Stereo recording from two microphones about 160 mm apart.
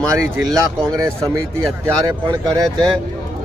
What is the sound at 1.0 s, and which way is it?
Speech, 20° right (ahead or behind).